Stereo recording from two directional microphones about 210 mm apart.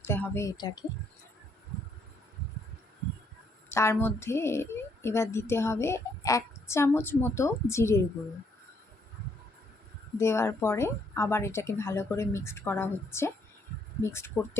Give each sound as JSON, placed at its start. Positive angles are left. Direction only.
{"t": 0.0, "sound": "a woman's voice", "side_deg": 10}
{"t": 3.7, "sound": "a woman's voice", "side_deg": 10}
{"t": 10.2, "sound": "a woman's voice", "side_deg": 10}